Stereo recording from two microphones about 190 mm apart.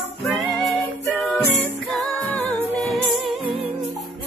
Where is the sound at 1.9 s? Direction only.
5° left (ahead or behind).